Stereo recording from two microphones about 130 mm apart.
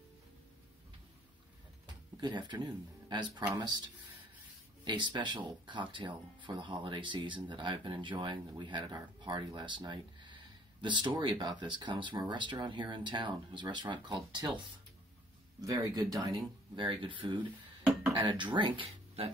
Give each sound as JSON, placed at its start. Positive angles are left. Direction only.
{"t": 2.1, "sound": "speech", "side_deg": -35}